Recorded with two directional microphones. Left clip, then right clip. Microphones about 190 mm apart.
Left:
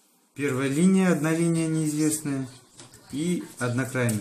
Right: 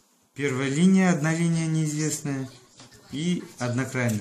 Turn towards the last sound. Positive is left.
turn(degrees=-30)  # may be behind; listen again after turning